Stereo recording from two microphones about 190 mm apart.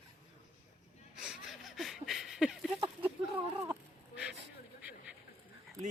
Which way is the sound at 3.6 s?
15° right (ahead or behind).